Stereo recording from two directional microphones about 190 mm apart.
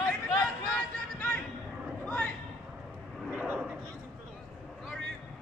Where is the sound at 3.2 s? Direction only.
5° right (ahead or behind).